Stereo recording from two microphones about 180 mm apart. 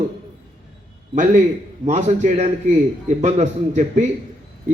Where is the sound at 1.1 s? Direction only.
45° right (ahead or behind).